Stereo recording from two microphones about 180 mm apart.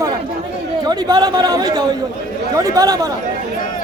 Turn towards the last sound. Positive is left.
turn(degrees=-20)  # may be behind; listen again after turning